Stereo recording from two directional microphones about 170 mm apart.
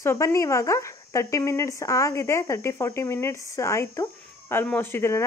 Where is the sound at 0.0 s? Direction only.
15° left (ahead or behind).